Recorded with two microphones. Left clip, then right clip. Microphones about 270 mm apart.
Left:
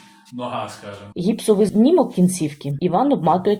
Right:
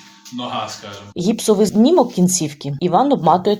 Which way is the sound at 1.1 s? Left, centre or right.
Centre.